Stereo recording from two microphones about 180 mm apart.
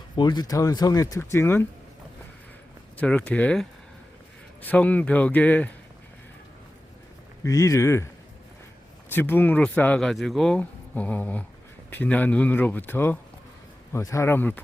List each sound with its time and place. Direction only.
0.2 s speech: 25° left (ahead or behind)
3.0 s speech: 5° left (ahead or behind)
7.4 s speech: 15° left (ahead or behind)
9.1 s speech: 10° left (ahead or behind)